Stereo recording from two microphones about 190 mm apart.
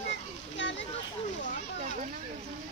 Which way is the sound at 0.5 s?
70° left (ahead or behind).